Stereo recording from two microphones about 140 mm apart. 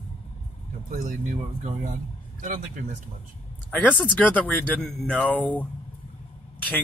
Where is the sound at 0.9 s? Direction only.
65° right (ahead or behind).